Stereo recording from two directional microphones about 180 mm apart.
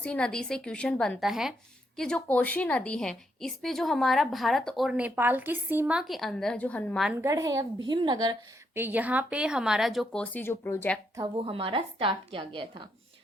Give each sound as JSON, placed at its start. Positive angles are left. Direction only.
{"t": 0.0, "sound": "a woman's voice", "side_deg": 5}
{"t": 7.2, "sound": "a woman's voice", "side_deg": -15}
{"t": 8.8, "sound": "a woman's voice", "side_deg": -10}
{"t": 11.2, "sound": "a woman's voice", "side_deg": -30}